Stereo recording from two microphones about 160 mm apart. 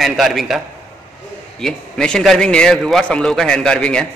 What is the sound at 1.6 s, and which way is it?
A man's voice, 5° left (ahead or behind).